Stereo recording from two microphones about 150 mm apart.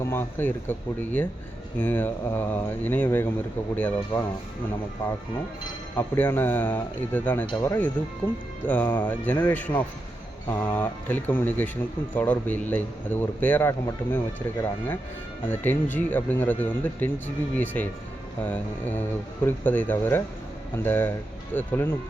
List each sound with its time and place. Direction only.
0.0 s a man's voice: 15° left (ahead or behind)
6.0 s a man's voice: 15° left (ahead or behind)